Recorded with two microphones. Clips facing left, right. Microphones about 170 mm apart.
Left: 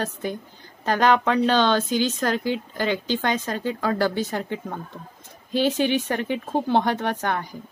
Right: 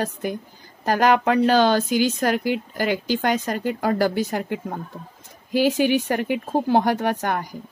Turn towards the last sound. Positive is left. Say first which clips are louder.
# right 2 dB
turn(degrees=-10)  # may be behind; listen again after turning